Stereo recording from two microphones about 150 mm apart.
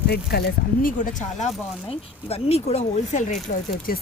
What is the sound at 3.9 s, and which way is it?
Speech, 80° left.